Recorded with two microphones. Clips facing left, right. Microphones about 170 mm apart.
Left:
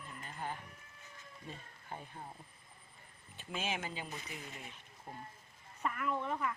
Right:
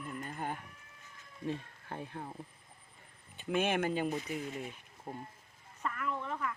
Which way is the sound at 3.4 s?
60° right (ahead or behind).